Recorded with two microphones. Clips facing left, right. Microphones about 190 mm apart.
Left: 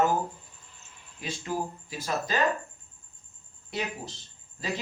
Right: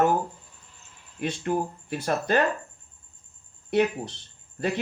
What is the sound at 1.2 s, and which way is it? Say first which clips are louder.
Speech: right 6 dB; 60° right (ahead or behind).